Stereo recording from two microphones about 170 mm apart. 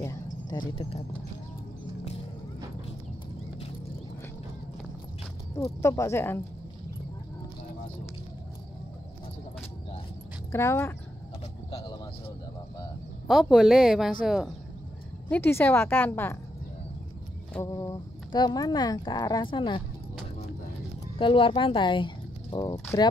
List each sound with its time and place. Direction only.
0.5 s speech: 30° left (ahead or behind)
5.8 s a woman's voice: 15° left (ahead or behind)
10.5 s a woman's voice: 15° left (ahead or behind)
11.7 s a sound: 25° left (ahead or behind)
13.3 s speech: centre (ahead or behind)
15.2 s a woman's voice: 10° left (ahead or behind)
17.6 s speech: 20° left (ahead or behind)
21.2 s speech: 30° left (ahead or behind)